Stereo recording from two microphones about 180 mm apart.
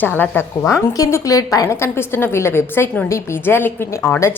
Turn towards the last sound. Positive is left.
turn(degrees=10)  # may be behind; listen again after turning